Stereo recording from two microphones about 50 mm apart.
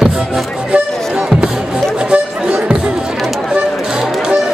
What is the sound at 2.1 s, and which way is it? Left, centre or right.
Music, right.